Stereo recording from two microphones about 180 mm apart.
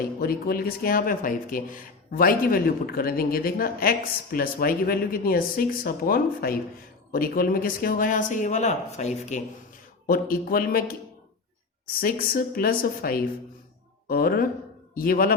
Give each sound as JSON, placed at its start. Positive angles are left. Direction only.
{"t": 0.2, "sound": "speech", "side_deg": 55}
{"t": 10.1, "sound": "speech", "side_deg": 55}
{"t": 11.9, "sound": "speech", "side_deg": 55}